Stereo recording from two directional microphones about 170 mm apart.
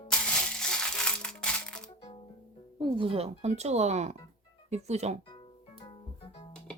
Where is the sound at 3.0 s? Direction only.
35° right (ahead or behind).